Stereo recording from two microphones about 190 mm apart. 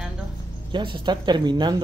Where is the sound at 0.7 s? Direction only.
25° right (ahead or behind).